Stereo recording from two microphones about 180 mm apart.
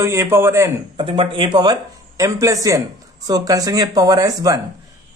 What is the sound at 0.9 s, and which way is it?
Speech, 30° right (ahead or behind).